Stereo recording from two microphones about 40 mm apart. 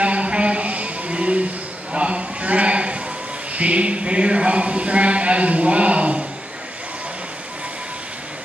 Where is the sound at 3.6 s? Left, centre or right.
Right.